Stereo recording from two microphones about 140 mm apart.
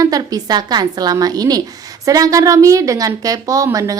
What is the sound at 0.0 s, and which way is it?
A woman's voice, 25° right (ahead or behind).